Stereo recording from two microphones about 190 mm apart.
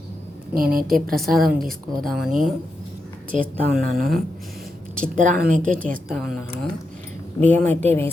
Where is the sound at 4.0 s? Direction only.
45° right (ahead or behind).